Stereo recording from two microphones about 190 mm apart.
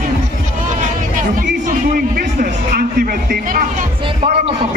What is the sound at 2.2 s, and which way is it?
Music, 50° right (ahead or behind).